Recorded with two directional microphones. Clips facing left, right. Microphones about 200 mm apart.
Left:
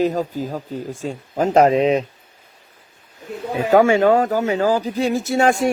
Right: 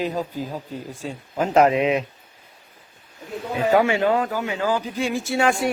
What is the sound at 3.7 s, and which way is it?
Speech, 45° left (ahead or behind).